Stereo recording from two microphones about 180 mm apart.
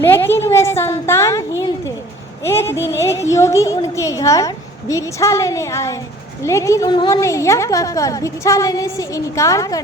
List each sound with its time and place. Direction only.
0.0 s a sound: 10° left (ahead or behind)
2.4 s a woman's voice: 15° left (ahead or behind)
6.9 s a woman's voice: 25° left (ahead or behind)
7.2 s a woman's voice: 15° left (ahead or behind)